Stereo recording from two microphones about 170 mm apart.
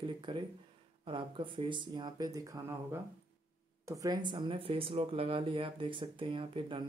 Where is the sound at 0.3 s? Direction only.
30° right (ahead or behind).